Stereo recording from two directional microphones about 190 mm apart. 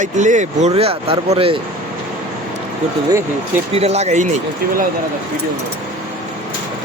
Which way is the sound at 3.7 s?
35° right (ahead or behind).